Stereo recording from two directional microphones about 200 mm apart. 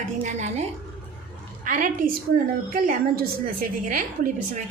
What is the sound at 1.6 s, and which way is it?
A woman's voice, 45° right (ahead or behind).